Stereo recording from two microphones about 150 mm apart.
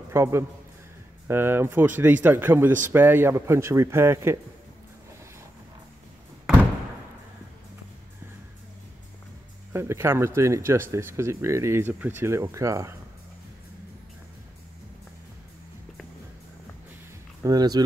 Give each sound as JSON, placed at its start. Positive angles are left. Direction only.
{"t": 0.1, "sound": "speech", "side_deg": -15}
{"t": 9.7, "sound": "speech", "side_deg": -15}
{"t": 17.4, "sound": "speech", "side_deg": -25}